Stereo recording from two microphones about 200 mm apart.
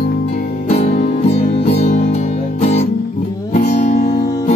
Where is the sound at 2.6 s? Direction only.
35° left (ahead or behind).